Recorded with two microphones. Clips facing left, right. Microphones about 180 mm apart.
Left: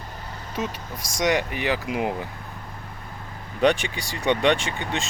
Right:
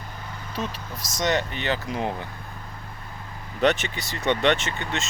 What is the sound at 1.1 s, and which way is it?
Speech, 10° left (ahead or behind).